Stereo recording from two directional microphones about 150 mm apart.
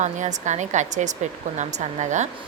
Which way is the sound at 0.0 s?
55° right (ahead or behind).